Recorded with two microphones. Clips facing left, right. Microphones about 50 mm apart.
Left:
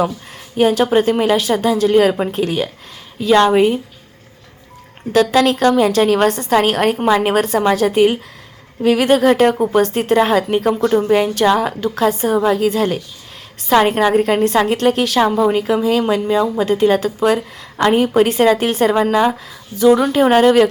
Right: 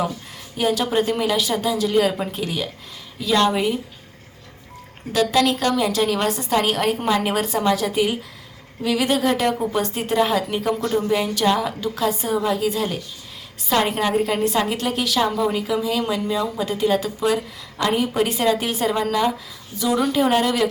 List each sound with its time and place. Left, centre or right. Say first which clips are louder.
0.5 s speech: left 7 dB; left
5.1 s a woman's voice: left 5 dB; left